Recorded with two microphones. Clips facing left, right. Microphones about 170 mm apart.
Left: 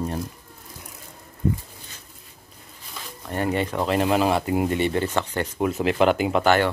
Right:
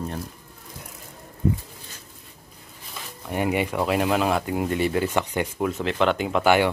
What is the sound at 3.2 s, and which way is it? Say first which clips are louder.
Speech: even; 10° right (ahead or behind).